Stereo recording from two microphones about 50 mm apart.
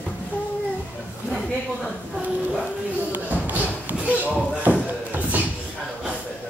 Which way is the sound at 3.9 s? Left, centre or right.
Right.